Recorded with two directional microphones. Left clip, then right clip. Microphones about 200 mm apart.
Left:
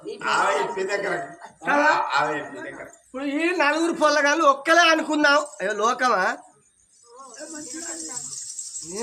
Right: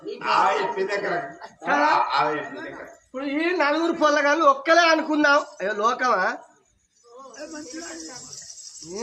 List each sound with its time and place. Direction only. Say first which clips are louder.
0.0 s a sound: right 2 dB; 5° left (ahead or behind)
2.0 s a man's voice: even; 5° left (ahead or behind)
3.1 s a man's voice: even; 30° left (ahead or behind)